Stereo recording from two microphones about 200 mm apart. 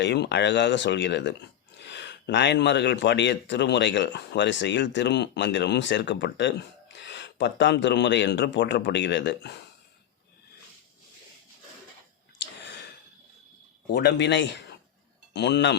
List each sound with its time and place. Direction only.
0.0 s a man's voice: 60° left (ahead or behind)
13.9 s a man's voice: 55° left (ahead or behind)